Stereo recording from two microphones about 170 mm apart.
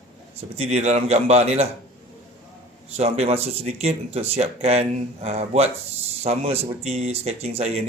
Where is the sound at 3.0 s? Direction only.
35° right (ahead or behind).